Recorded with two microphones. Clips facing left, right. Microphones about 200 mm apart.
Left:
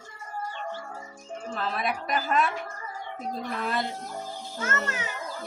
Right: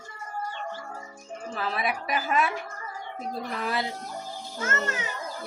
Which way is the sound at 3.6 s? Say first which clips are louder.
Even; 5° right (ahead or behind).